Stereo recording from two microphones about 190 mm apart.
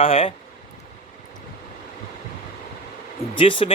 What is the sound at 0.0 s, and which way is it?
Speech, 30° left (ahead or behind).